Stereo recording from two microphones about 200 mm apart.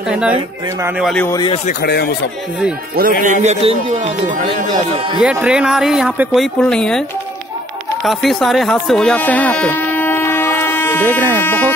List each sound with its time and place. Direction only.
0.1 s speech: 5° right (ahead or behind)
1.1 s speech: 10° left (ahead or behind)
1.7 s speech: 50° left (ahead or behind)
3.0 s a man's voice: 40° right (ahead or behind)
5.2 s speech: 5° right (ahead or behind)